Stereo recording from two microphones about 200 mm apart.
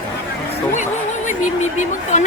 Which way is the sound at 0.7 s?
40° left (ahead or behind).